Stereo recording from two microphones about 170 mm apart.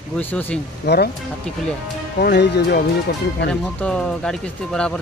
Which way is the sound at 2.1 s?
75° left (ahead or behind).